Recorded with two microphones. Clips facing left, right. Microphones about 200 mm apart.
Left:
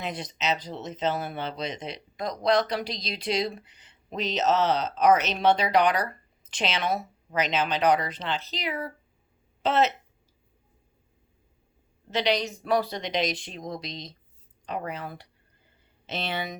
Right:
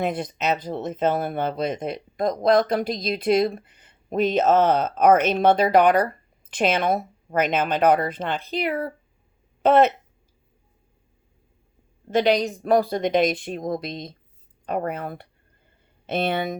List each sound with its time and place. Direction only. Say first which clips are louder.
0.0 s speech: right 7 dB; 55° right (ahead or behind)
12.1 s speech: right 6 dB; 50° right (ahead or behind)